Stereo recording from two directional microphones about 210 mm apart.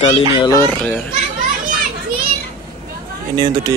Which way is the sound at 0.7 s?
5° left (ahead or behind).